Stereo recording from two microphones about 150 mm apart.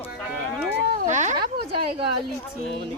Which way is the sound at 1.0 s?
50° right (ahead or behind).